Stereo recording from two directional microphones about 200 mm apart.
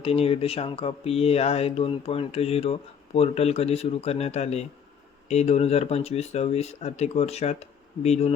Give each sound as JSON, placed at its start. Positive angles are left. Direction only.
{"t": 0.0, "sound": "speech", "side_deg": 30}